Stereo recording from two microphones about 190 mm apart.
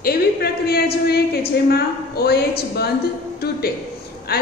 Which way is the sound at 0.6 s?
55° left (ahead or behind).